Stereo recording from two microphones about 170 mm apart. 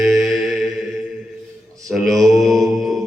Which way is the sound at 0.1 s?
Centre (ahead or behind).